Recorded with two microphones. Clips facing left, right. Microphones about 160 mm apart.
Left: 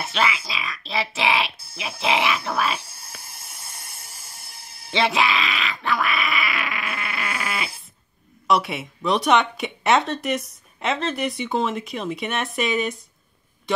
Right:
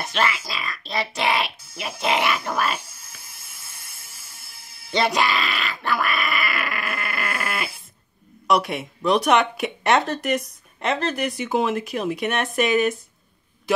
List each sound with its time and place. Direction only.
0.0 s a sound: centre (ahead or behind)
1.8 s speech: centre (ahead or behind)
3.5 s music: 45° left (ahead or behind)
4.9 s dog: centre (ahead or behind)
8.5 s a man's voice: centre (ahead or behind)